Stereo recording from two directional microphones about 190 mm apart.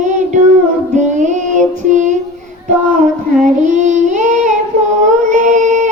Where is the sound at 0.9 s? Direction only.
40° right (ahead or behind).